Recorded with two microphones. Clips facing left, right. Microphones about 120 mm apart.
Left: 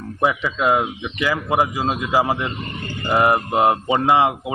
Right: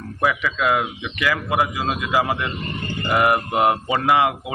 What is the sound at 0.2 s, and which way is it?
Speech, 25° left (ahead or behind).